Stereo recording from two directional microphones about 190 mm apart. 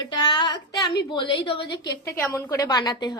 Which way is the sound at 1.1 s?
25° left (ahead or behind).